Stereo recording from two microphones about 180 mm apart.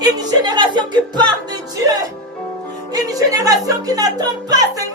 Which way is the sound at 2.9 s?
20° right (ahead or behind).